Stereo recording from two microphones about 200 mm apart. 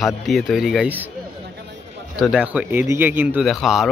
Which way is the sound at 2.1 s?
Centre (ahead or behind).